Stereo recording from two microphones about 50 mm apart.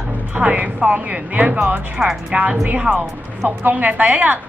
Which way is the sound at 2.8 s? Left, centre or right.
Right.